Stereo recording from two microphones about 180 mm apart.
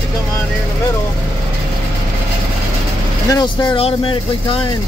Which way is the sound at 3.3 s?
25° left (ahead or behind).